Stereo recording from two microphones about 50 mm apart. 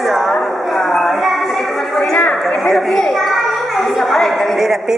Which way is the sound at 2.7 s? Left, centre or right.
Centre.